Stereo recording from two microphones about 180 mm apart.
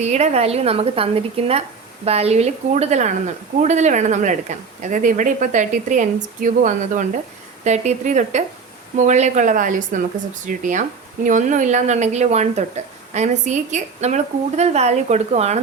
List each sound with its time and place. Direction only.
0.0 s speech: 40° right (ahead or behind)